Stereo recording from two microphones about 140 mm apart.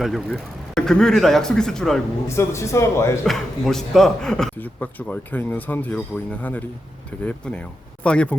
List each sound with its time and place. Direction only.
0.0 s speech: centre (ahead or behind)
2.2 s a man's voice: 20° left (ahead or behind)
3.2 s a man's voice: centre (ahead or behind)